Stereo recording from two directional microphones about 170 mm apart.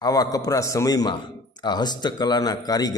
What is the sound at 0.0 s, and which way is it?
A man's voice, 20° left (ahead or behind).